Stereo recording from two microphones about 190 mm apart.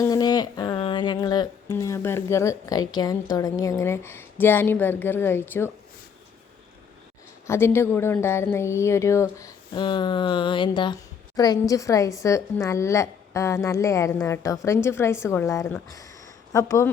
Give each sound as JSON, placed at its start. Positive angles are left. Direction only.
{"t": 0.0, "sound": "music", "side_deg": 20}
{"t": 7.4, "sound": "a woman's voice", "side_deg": 15}